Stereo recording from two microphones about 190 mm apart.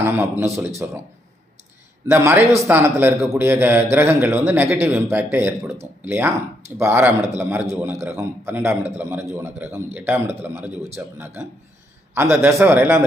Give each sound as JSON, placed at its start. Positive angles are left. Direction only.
{"t": 0.0, "sound": "a man's voice", "side_deg": -10}
{"t": 2.0, "sound": "a man's voice", "side_deg": -15}
{"t": 2.4, "sound": "speech", "side_deg": -35}
{"t": 2.6, "sound": "a man's voice", "side_deg": -10}